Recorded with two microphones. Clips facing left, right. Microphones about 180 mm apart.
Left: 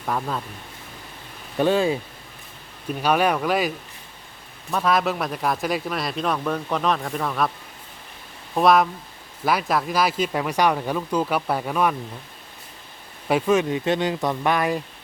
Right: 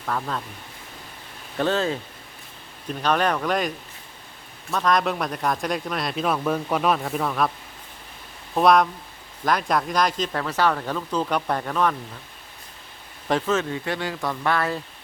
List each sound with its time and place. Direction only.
0.0 s speech: 10° left (ahead or behind)
1.5 s speech: 10° left (ahead or behind)
3.0 s speech: 10° left (ahead or behind)
4.7 s speech: 5° left (ahead or behind)
8.5 s speech: centre (ahead or behind)
13.2 s speech: 10° left (ahead or behind)